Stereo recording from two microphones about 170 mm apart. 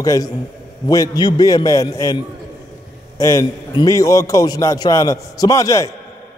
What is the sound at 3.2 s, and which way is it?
A man's voice, 20° left (ahead or behind).